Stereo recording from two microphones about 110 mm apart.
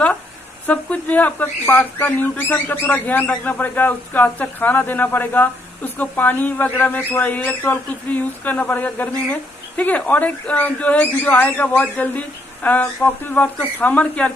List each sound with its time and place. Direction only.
0.7 s speech: 15° left (ahead or behind)